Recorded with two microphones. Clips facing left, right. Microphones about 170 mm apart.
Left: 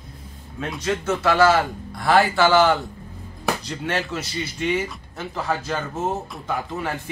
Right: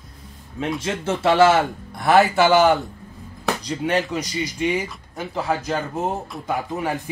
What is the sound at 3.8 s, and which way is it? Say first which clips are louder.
Speech: right 4 dB; 15° right (ahead or behind).